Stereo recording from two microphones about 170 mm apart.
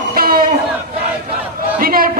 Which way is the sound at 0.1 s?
60° right (ahead or behind).